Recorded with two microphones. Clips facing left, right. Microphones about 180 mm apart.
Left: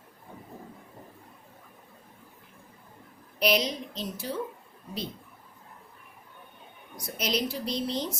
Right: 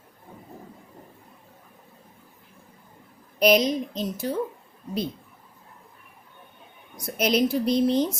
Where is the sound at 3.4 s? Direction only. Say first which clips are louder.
Right 7 dB; 45° right (ahead or behind).